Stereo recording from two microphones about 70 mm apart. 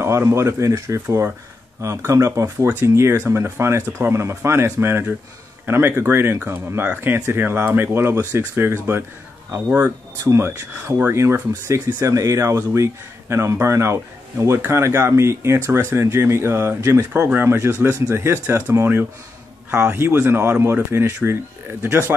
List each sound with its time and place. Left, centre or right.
0.0 s speech: right
8.2 s speech: right
8.5 s speech: right
17.3 s speech: right
17.7 s speech: centre
18.1 s speech: right